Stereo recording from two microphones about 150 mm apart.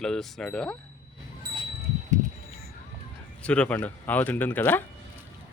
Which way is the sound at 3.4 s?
10° left (ahead or behind).